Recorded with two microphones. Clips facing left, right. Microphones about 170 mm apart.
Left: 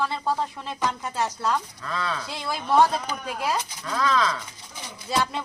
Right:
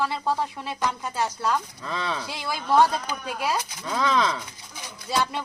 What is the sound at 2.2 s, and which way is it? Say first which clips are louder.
A man's voice: even; 5° right (ahead or behind).